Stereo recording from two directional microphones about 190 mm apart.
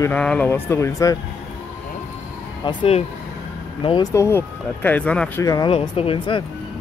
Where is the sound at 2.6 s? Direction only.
30° left (ahead or behind); by 5.4 s 5° left (ahead or behind).